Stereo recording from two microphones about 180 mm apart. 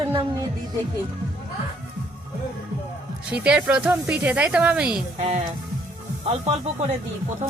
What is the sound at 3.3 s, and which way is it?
Speech, 5° right (ahead or behind).